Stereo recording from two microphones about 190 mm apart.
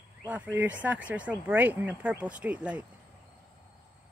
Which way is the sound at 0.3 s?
5° right (ahead or behind).